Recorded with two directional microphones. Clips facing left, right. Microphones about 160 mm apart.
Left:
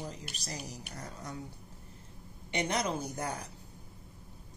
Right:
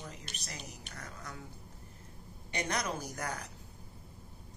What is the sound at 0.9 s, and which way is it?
Speech, 30° left (ahead or behind).